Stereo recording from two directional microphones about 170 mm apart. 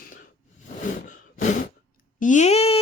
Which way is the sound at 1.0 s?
50° left (ahead or behind).